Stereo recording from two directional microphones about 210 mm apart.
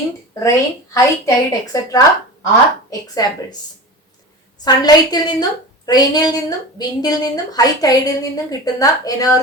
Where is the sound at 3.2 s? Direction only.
20° left (ahead or behind).